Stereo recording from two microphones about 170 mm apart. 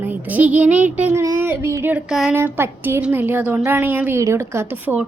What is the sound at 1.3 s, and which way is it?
Child singing, 15° right (ahead or behind).